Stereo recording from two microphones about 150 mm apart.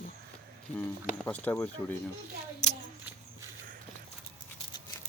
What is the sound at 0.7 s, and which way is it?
Speech, 10° left (ahead or behind).